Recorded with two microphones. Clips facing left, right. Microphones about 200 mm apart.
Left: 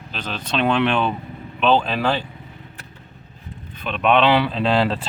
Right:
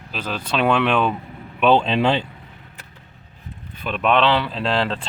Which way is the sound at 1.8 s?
25° right (ahead or behind).